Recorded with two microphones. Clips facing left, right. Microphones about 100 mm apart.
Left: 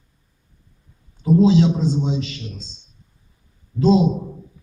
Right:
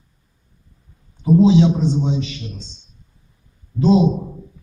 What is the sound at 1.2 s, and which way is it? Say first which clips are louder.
Speech: right 2 dB; 20° right (ahead or behind).